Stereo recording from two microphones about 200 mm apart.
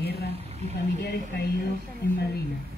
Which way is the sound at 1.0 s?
55° left (ahead or behind).